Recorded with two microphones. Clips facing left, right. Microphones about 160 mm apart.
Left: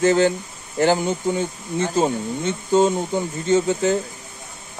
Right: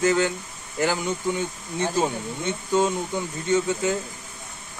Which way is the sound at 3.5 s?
30° left (ahead or behind).